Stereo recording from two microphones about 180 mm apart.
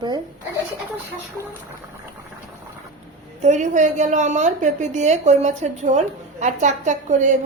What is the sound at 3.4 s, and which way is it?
A woman's voice, 40° right (ahead or behind).